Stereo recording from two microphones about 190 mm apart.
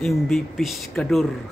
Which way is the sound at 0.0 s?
Centre (ahead or behind).